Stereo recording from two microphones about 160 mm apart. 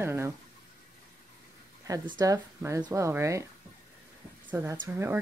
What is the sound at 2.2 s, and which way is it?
Speech, 20° right (ahead or behind).